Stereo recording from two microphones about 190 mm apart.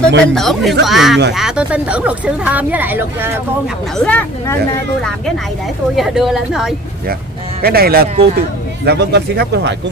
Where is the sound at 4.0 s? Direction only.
10° left (ahead or behind).